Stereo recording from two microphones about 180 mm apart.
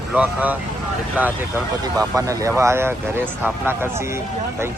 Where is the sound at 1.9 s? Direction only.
20° right (ahead or behind).